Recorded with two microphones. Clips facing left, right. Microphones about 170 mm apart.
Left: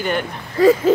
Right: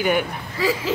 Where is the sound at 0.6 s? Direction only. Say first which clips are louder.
Left 10 dB; 55° left (ahead or behind).